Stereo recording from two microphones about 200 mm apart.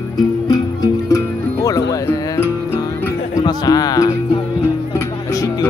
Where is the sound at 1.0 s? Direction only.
15° left (ahead or behind).